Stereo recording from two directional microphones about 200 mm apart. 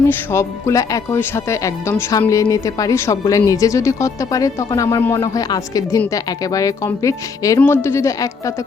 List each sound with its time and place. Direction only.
0.3 s speech: 15° left (ahead or behind)